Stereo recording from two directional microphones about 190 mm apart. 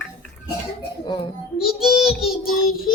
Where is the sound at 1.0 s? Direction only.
25° left (ahead or behind).